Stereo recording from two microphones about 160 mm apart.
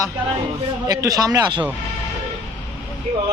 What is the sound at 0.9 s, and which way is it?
Speech, 20° right (ahead or behind).